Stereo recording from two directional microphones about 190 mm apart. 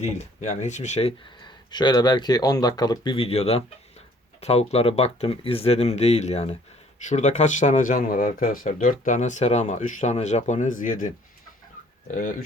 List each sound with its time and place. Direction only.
0.0 s speech: 35° left (ahead or behind)